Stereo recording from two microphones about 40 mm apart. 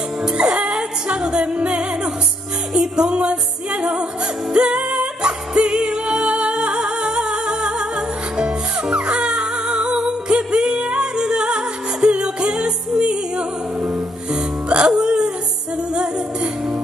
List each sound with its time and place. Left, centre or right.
0.3 s music: right
15.0 s a sound: right
15.9 s music: centre